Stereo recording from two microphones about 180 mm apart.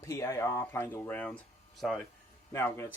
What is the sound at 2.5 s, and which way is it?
Speech, 15° left (ahead or behind).